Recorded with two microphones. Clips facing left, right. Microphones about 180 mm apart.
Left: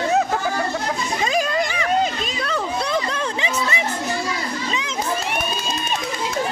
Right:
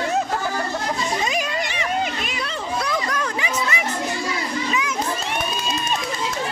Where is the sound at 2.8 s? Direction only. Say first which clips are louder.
Left 1 dB; 25° left (ahead or behind).